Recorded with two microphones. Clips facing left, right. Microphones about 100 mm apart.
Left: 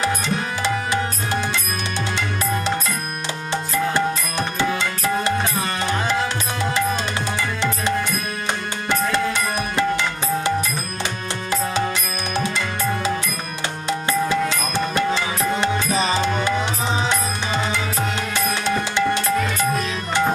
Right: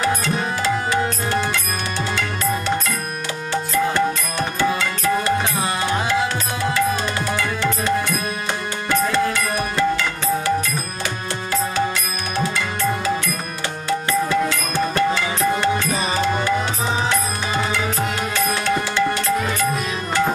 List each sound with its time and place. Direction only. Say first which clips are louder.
3.9 s music: right 1 dB; 20° left (ahead or behind)
9.3 s music: right 1 dB; 20° left (ahead or behind)
13.8 s music: right 1 dB; 20° left (ahead or behind)